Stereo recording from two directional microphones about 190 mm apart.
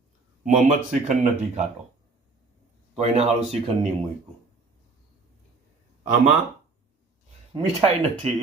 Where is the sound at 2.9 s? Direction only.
35° right (ahead or behind).